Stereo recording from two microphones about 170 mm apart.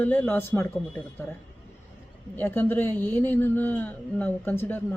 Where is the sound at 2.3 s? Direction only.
10° left (ahead or behind).